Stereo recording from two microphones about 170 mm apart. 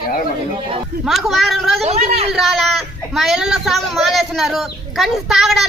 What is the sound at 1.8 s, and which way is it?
Speech, 35° right (ahead or behind).